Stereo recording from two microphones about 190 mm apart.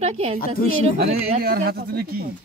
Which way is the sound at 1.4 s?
55° right (ahead or behind).